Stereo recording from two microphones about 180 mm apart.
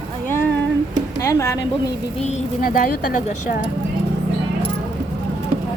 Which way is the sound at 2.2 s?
45° left (ahead or behind).